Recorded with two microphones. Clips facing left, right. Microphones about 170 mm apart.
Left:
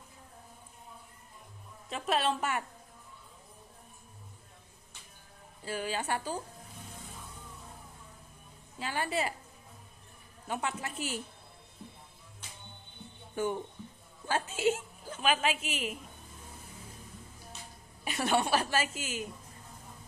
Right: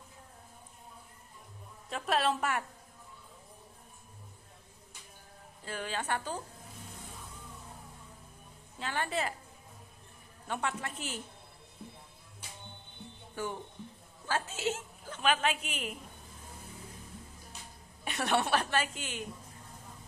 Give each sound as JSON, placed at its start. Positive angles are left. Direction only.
{"t": 1.9, "sound": "a woman's voice", "side_deg": 0}
{"t": 5.7, "sound": "speech", "side_deg": 10}
{"t": 8.7, "sound": "speech", "side_deg": 10}
{"t": 10.5, "sound": "speech", "side_deg": 5}
{"t": 13.4, "sound": "a woman's voice", "side_deg": 20}
{"t": 18.0, "sound": "a woman's voice", "side_deg": 0}